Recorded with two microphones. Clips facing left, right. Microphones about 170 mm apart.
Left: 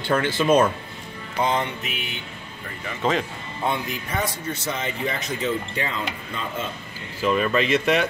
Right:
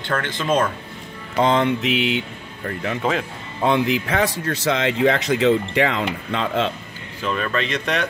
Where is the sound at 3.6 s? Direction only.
90° right.